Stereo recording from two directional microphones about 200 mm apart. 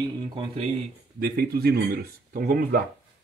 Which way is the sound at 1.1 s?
50° right (ahead or behind).